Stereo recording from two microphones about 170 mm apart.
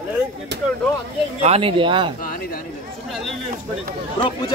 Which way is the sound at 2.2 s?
55° left (ahead or behind).